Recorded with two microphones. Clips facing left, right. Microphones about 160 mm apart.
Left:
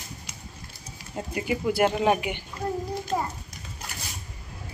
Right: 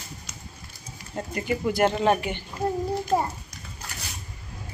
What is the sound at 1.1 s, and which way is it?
Speech, 5° left (ahead or behind).